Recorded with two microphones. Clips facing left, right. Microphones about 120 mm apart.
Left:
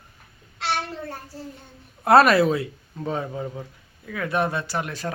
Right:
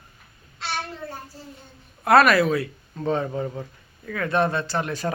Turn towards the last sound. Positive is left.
turn(degrees=0)  # may be behind; listen again after turning